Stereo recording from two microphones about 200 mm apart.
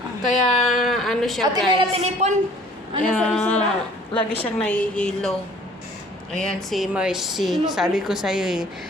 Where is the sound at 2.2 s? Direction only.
35° right (ahead or behind).